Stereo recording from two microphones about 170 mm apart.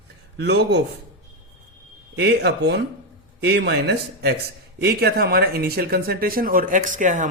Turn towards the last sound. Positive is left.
turn(degrees=-45)  # may be behind; listen again after turning